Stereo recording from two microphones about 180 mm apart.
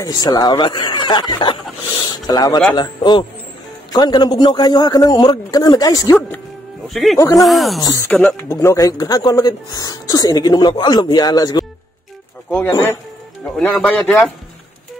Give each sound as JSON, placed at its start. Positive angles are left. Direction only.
{"t": 0.0, "sound": "speech", "side_deg": 20}
{"t": 6.9, "sound": "speech", "side_deg": 0}
{"t": 7.2, "sound": "a man's voice", "side_deg": 20}
{"t": 7.4, "sound": "a man's voice", "side_deg": 0}
{"t": 8.5, "sound": "a man's voice", "side_deg": 20}